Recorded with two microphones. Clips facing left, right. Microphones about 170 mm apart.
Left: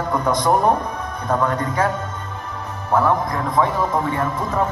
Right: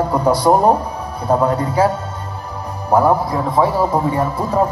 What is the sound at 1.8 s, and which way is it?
Music, 30° right (ahead or behind).